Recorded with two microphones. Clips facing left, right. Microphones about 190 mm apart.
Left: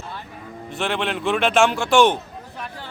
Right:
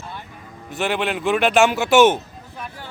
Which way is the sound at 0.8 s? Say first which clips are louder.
Right 2 dB; 5° right (ahead or behind).